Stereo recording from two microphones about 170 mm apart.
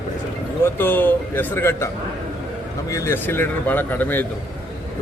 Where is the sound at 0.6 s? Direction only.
10° left (ahead or behind).